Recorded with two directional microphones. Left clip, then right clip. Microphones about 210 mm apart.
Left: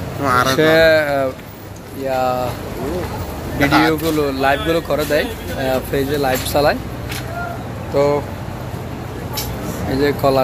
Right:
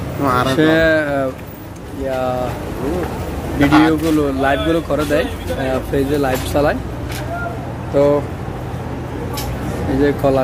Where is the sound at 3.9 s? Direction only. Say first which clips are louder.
Right 1 dB; 15° left (ahead or behind).